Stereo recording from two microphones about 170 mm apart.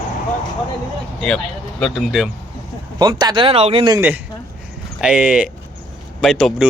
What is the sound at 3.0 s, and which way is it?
Speech, 25° right (ahead or behind).